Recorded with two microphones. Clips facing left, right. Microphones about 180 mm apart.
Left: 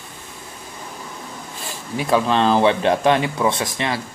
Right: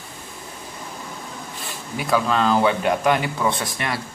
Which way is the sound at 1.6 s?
25° left (ahead or behind).